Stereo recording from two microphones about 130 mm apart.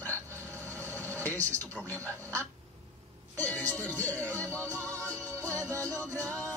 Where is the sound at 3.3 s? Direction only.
10° left (ahead or behind).